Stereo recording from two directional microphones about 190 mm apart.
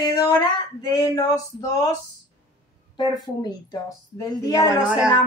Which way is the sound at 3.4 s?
20° left (ahead or behind).